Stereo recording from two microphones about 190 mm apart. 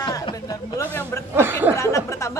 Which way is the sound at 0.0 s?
20° left (ahead or behind).